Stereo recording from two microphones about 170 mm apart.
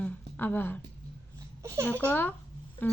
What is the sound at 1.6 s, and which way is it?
Babbling, 15° right (ahead or behind).